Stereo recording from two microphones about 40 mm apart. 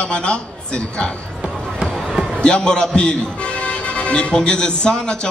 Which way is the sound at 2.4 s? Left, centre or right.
Left.